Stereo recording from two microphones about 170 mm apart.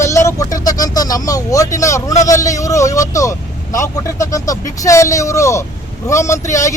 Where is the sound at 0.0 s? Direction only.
15° left (ahead or behind).